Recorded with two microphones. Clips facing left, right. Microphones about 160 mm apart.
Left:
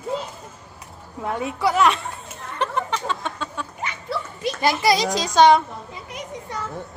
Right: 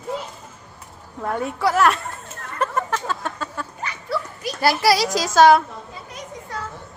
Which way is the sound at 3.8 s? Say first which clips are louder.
Right 2 dB; 25° left (ahead or behind).